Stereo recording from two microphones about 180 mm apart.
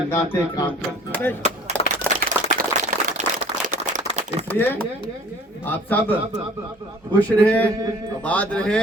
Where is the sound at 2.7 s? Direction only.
30° left (ahead or behind).